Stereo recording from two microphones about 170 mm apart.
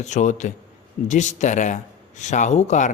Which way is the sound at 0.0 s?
45° left (ahead or behind).